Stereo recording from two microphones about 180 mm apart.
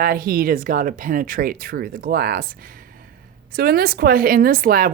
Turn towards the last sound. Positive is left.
turn(degrees=-50)  # may be behind; listen again after turning